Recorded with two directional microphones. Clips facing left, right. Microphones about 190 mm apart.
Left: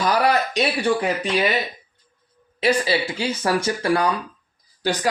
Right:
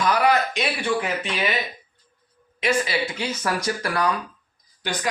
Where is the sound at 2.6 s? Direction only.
35° left (ahead or behind).